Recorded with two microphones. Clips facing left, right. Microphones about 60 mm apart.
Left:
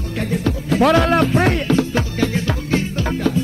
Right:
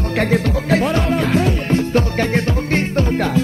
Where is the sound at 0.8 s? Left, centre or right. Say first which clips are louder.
Left 4 dB; left.